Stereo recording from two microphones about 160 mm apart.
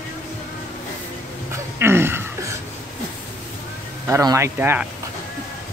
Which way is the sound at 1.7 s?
15° right (ahead or behind).